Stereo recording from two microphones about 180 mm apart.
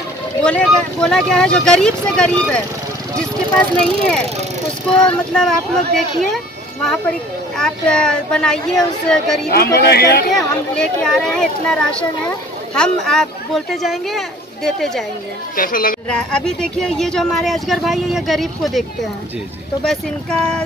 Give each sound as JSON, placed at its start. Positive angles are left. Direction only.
{"t": 0.4, "sound": "speech", "side_deg": 5}
{"t": 3.8, "sound": "speech", "side_deg": 5}
{"t": 9.5, "sound": "speech", "side_deg": 60}
{"t": 10.3, "sound": "speech", "side_deg": 5}
{"t": 15.5, "sound": "a woman's voice", "side_deg": 50}
{"t": 16.1, "sound": "speech", "side_deg": 5}